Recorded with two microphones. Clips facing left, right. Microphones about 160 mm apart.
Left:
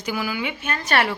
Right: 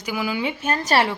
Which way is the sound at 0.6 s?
40° right (ahead or behind).